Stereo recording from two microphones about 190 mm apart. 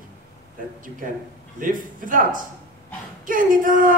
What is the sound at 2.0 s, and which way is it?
A woman's voice, 45° right (ahead or behind).